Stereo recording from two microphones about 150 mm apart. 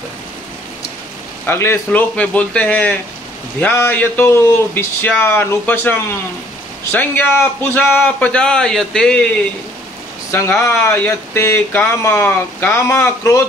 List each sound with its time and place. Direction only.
1.4 s speech: 15° left (ahead or behind)
10.3 s speech: 20° left (ahead or behind)